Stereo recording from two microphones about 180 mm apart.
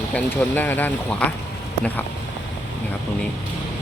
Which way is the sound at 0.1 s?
10° left (ahead or behind).